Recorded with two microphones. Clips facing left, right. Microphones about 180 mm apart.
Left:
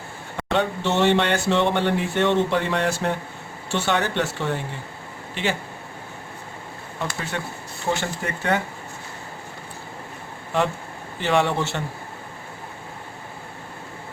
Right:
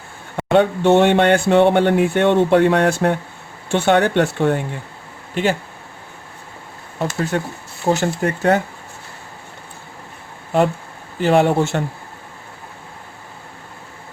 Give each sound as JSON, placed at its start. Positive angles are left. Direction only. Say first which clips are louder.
{"t": 0.5, "sound": "speech", "louder": "right 9 dB", "side_deg": -55}
{"t": 7.0, "sound": "speech", "louder": "right 8 dB", "side_deg": -40}
{"t": 11.2, "sound": "speech", "louder": "right 7 dB", "side_deg": -40}